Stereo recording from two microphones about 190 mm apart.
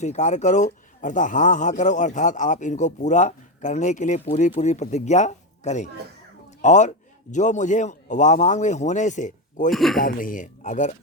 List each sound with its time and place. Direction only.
0.0 s a man's voice: 40° left (ahead or behind)
9.7 s speech: centre (ahead or behind)
10.0 s speech: 45° left (ahead or behind)